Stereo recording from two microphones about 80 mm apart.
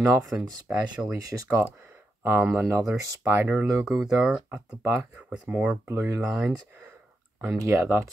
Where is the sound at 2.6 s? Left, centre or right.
Right.